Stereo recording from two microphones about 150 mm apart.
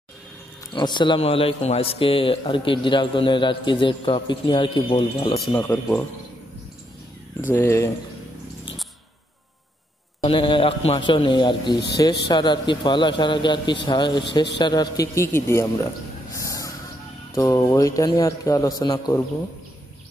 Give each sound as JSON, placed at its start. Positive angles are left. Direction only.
{"t": 0.7, "sound": "a man's voice", "side_deg": 30}
{"t": 5.5, "sound": "speech", "side_deg": 15}
{"t": 7.4, "sound": "speech", "side_deg": 15}
{"t": 10.2, "sound": "a man's voice", "side_deg": 35}
{"t": 16.3, "sound": "vehicle", "side_deg": 20}
{"t": 17.4, "sound": "a man's voice", "side_deg": 20}